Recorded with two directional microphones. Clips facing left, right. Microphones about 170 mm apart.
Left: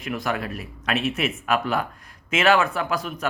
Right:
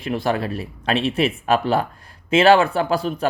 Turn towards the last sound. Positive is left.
turn(degrees=-30)  # may be behind; listen again after turning